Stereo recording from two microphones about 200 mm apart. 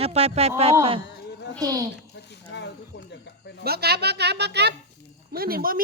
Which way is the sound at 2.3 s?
60° left (ahead or behind).